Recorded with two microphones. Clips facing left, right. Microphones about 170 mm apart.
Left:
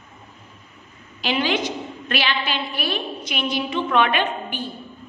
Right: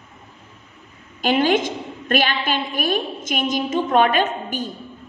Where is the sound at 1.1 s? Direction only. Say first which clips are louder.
Right 5 dB; 50° right (ahead or behind).